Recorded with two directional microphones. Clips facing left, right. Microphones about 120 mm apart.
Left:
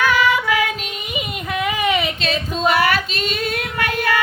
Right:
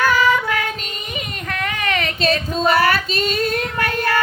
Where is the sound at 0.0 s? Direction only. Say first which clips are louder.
Even; 40° right (ahead or behind).